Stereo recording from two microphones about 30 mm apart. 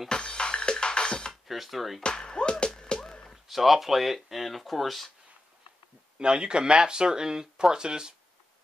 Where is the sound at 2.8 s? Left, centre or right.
Left.